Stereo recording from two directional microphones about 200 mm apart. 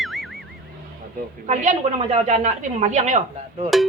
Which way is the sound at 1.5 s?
35° right (ahead or behind).